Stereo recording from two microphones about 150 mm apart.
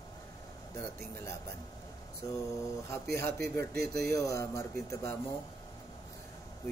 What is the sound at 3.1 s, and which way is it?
Speech, 20° left (ahead or behind).